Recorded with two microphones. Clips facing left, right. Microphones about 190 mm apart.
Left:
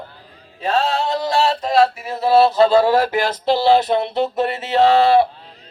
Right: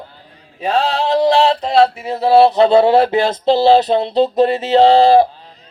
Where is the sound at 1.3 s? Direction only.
20° right (ahead or behind).